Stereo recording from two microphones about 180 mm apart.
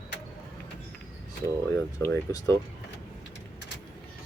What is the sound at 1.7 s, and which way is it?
Speech, 15° left (ahead or behind).